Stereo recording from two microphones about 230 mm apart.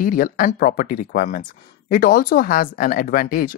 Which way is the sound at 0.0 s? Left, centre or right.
Left.